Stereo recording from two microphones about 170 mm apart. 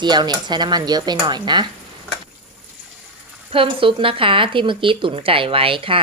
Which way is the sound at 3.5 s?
30° right (ahead or behind).